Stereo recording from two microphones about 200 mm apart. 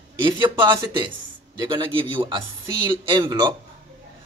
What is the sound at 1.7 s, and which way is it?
Speech, 25° right (ahead or behind).